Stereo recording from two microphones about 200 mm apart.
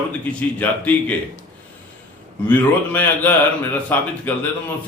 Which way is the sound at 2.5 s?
10° left (ahead or behind).